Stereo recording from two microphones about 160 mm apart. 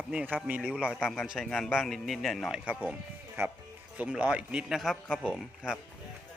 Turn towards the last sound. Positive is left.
turn(degrees=5)  # may be behind; listen again after turning